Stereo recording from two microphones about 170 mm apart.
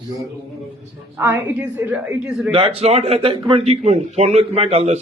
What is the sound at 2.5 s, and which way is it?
A man's voice, 30° right (ahead or behind).